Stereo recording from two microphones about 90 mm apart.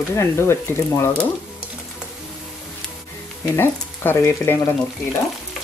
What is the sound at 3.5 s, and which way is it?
Speech, 25° left (ahead or behind).